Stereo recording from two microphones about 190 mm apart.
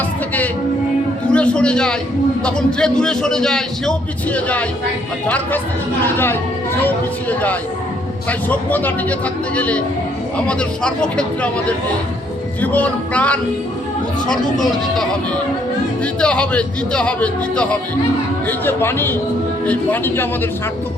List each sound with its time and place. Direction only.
1.3 s a sound: 5° left (ahead or behind)
2.4 s a man's voice: 5° left (ahead or behind)
6.8 s a man's voice: 10° left (ahead or behind)
16.2 s a man's voice: 5° left (ahead or behind)